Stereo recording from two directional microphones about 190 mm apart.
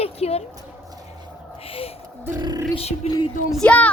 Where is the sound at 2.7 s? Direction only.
30° left (ahead or behind).